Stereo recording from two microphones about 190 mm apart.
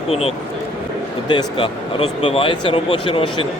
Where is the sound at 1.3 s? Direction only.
25° left (ahead or behind).